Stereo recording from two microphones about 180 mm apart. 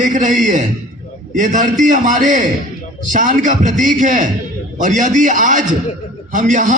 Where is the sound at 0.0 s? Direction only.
45° right (ahead or behind).